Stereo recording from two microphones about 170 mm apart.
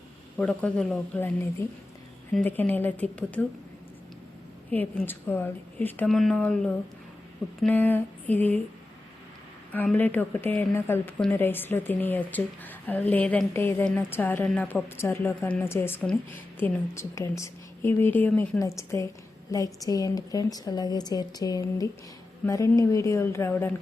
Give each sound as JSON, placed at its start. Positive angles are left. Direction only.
{"t": 0.3, "sound": "a woman's voice", "side_deg": 5}
{"t": 4.7, "sound": "a woman's voice", "side_deg": 10}
{"t": 9.7, "sound": "a woman's voice", "side_deg": 10}